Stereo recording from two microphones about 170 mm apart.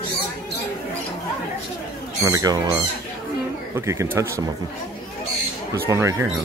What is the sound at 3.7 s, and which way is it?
Speech, 15° right (ahead or behind).